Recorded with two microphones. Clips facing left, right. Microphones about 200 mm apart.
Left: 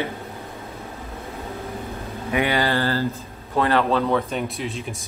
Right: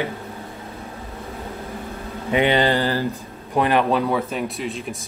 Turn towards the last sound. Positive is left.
turn(degrees=0)  # may be behind; listen again after turning